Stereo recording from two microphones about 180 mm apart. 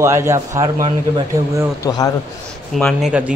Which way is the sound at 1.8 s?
20° left (ahead or behind).